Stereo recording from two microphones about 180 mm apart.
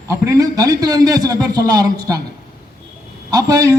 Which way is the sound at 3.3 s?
15° right (ahead or behind).